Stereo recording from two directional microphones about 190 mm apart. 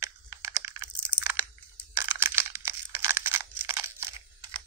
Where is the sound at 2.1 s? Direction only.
10° right (ahead or behind).